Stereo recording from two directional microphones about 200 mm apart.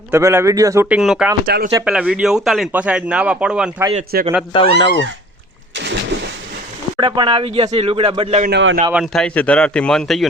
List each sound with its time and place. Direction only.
0.1 s a man's voice: 15° right (ahead or behind)
1.5 s speech: 55° right (ahead or behind)
1.8 s a man's voice: 5° right (ahead or behind)
4.1 s speech: 50° right (ahead or behind)
4.5 s speech: 25° left (ahead or behind)
5.7 s a sound: 60° right (ahead or behind)
7.0 s speech: 25° right (ahead or behind)
8.4 s a man's voice: 55° right (ahead or behind)
8.9 s a man's voice: centre (ahead or behind)